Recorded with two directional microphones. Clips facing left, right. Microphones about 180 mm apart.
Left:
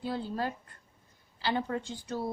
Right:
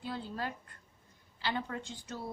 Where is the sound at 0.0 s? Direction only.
35° left (ahead or behind).